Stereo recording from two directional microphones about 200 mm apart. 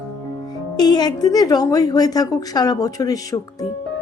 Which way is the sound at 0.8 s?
20° left (ahead or behind).